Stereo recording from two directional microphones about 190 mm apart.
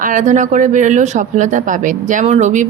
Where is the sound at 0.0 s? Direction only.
45° right (ahead or behind).